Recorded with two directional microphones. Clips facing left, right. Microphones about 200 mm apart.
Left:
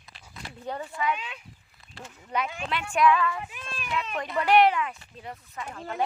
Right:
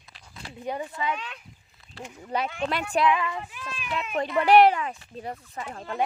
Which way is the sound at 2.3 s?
35° right (ahead or behind).